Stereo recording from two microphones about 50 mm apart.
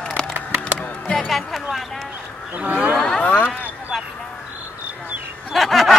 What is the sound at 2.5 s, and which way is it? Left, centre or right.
Speech, right.